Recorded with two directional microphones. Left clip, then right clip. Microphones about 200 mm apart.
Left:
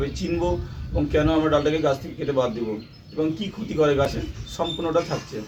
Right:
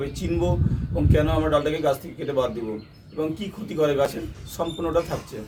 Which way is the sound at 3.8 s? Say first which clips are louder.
Left 1 dB; 20° right (ahead or behind).